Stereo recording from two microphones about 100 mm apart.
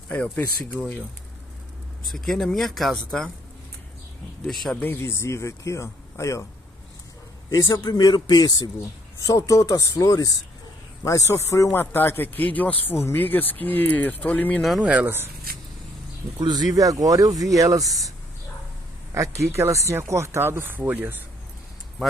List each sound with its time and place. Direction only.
0.7 s speech: 15° left (ahead or behind)
2.0 s speech: 5° left (ahead or behind)
4.5 s speech: centre (ahead or behind)
4.7 s a man's voice: 20° left (ahead or behind)
7.7 s a man's voice: 40° left (ahead or behind); by 14.6 s 15° left (ahead or behind)
14.6 s speech: centre (ahead or behind)
14.9 s speech: 20° right (ahead or behind)
16.3 s speech: 45° right (ahead or behind)
19.1 s speech: 30° right (ahead or behind)